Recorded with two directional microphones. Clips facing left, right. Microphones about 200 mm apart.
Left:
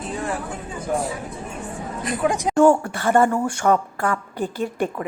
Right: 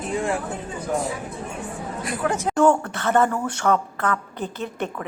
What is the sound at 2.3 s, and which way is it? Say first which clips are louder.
A woman's voice: left 3 dB; 15° left (ahead or behind).